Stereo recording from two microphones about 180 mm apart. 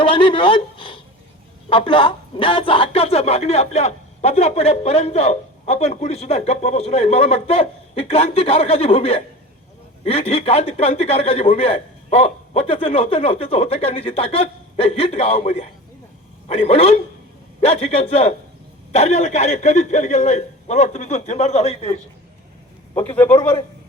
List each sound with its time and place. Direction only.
0.0 s speech: 30° left (ahead or behind)